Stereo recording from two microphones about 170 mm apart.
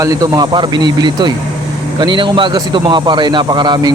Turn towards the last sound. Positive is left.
turn(degrees=-25)  # may be behind; listen again after turning